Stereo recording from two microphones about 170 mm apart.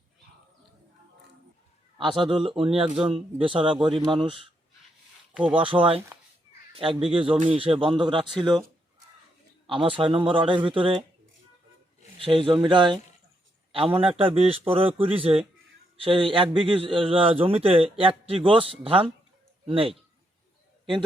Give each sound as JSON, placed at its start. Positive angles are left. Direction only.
{"t": 2.0, "sound": "a man's voice", "side_deg": -30}
{"t": 5.3, "sound": "speech", "side_deg": -5}
{"t": 5.5, "sound": "a man's voice", "side_deg": -30}
{"t": 9.6, "sound": "a man's voice", "side_deg": -30}
{"t": 12.2, "sound": "a man's voice", "side_deg": -30}